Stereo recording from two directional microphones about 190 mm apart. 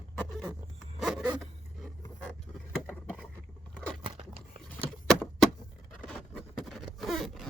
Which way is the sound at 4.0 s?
25° right (ahead or behind).